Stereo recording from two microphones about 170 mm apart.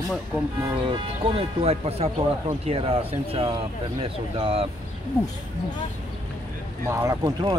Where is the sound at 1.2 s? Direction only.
35° right (ahead or behind).